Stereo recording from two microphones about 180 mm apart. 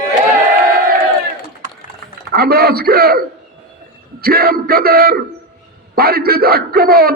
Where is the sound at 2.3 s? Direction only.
60° right (ahead or behind).